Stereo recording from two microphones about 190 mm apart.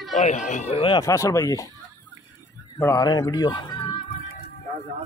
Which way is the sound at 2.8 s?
20° left (ahead or behind).